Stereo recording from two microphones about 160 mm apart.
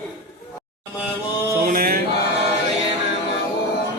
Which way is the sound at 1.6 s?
65° right (ahead or behind).